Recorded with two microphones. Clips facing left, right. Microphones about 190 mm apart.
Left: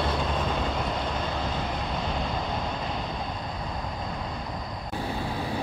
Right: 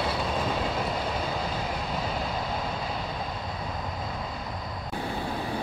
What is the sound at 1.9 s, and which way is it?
Vehicle, 5° right (ahead or behind).